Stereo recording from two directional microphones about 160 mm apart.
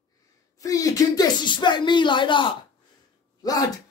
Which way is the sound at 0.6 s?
20° left (ahead or behind).